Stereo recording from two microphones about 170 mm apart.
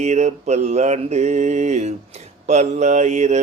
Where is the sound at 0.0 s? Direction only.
40° right (ahead or behind).